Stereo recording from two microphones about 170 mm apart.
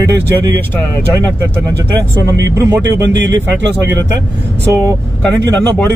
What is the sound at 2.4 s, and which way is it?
Speech, 20° right (ahead or behind).